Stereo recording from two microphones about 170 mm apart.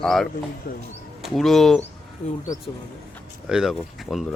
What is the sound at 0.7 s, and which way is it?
Speech, 60° left (ahead or behind).